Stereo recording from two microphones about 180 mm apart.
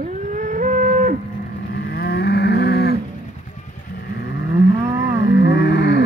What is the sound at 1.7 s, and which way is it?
Moo, 60° left (ahead or behind).